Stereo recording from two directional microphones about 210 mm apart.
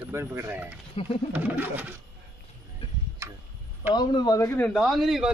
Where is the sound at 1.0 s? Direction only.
25° left (ahead or behind).